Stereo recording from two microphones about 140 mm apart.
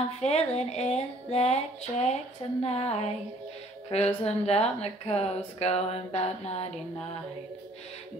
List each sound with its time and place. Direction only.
0.2 s speech: 50° left (ahead or behind)